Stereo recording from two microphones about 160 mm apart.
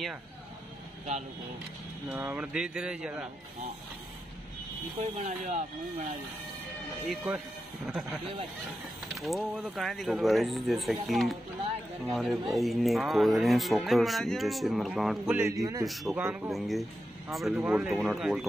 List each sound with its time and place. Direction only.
2.0 s speech: 10° right (ahead or behind)
5.2 s speech: 45° right (ahead or behind)
7.1 s speech: 5° right (ahead or behind)
9.1 s speech: centre (ahead or behind)
15.3 s speech: 20° right (ahead or behind)
15.8 s speech: centre (ahead or behind)
16.2 s speech: 10° right (ahead or behind)
16.4 s speech: centre (ahead or behind)